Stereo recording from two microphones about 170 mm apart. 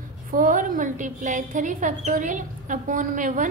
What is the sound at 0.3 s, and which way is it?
A woman's voice, 50° right (ahead or behind).